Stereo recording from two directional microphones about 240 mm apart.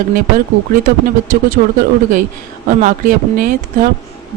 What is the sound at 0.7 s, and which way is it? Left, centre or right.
Speech, right.